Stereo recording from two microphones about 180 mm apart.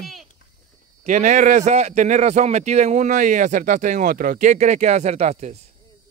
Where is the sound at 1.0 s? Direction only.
45° right (ahead or behind).